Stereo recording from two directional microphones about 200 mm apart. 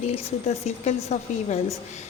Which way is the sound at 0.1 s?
30° left (ahead or behind).